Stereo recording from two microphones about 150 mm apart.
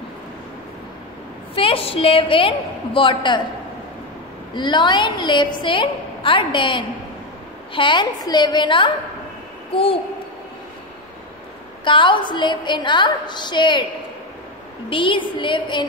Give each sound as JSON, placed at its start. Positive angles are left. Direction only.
{"t": 1.5, "sound": "a woman's voice", "side_deg": 35}
{"t": 4.6, "sound": "a woman's voice", "side_deg": 30}
{"t": 11.8, "sound": "a woman's voice", "side_deg": 35}
{"t": 14.9, "sound": "a woman's voice", "side_deg": 35}